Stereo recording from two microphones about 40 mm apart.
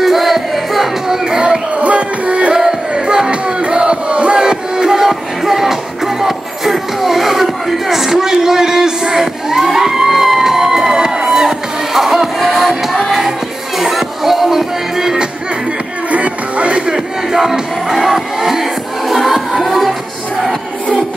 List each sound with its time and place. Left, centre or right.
0.0 s music: centre
1.4 s music: right
2.5 s music: centre
3.6 s crowd: right
4.4 s music: centre
16.1 s music: right
16.8 s music: centre